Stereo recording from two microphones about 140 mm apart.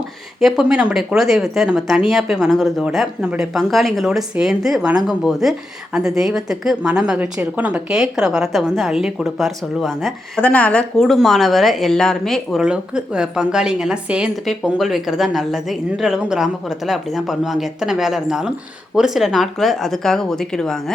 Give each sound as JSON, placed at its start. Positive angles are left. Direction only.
{"t": 0.3, "sound": "speech", "side_deg": -5}